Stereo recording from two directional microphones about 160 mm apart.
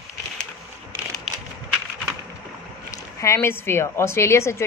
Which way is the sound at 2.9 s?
20° left (ahead or behind).